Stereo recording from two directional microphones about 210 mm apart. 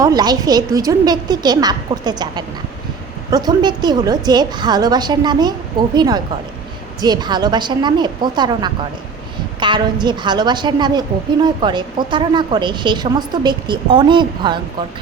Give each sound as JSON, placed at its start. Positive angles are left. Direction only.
{"t": 0.0, "sound": "a woman's voice", "side_deg": -20}